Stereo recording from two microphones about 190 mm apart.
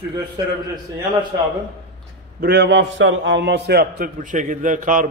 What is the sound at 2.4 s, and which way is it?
A man's voice, 55° right (ahead or behind).